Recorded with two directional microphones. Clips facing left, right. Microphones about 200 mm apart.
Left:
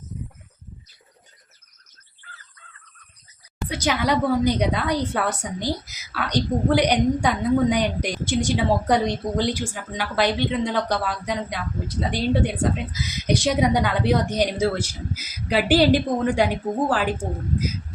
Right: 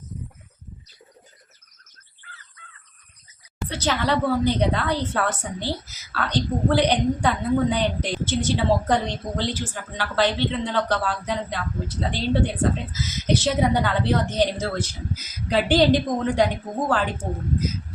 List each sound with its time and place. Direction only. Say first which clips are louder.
3.7 s a woman's voice: left 1 dB; 10° left (ahead or behind)